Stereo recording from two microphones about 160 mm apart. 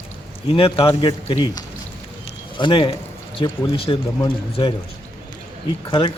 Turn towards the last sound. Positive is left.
turn(degrees=30)  # may be behind; listen again after turning